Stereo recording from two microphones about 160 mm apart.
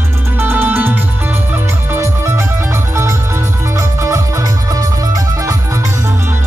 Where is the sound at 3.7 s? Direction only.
15° right (ahead or behind).